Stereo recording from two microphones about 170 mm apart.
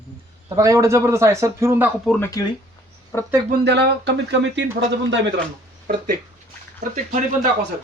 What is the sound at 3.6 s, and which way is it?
Speech, 90° right.